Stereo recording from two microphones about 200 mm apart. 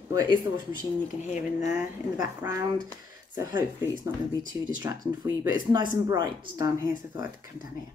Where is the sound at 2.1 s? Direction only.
10° right (ahead or behind).